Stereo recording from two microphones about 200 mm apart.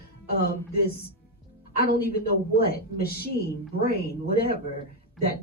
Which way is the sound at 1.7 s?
50° left (ahead or behind).